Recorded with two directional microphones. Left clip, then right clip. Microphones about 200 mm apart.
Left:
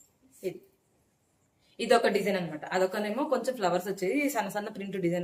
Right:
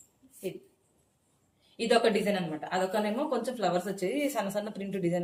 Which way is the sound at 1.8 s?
20° left (ahead or behind).